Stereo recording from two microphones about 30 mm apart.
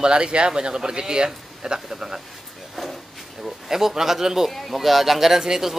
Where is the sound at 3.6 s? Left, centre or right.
Centre.